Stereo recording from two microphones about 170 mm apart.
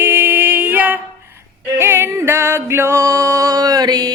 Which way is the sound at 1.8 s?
15° right (ahead or behind).